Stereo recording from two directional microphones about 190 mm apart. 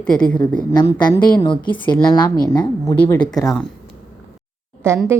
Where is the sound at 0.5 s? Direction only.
20° left (ahead or behind).